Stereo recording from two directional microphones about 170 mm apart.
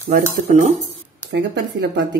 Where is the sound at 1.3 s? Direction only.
85° right.